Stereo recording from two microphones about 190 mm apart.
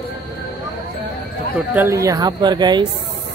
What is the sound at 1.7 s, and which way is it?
Speech, 10° right (ahead or behind).